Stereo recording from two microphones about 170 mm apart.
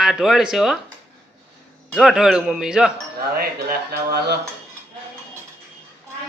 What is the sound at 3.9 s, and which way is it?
Speech, 70° right (ahead or behind).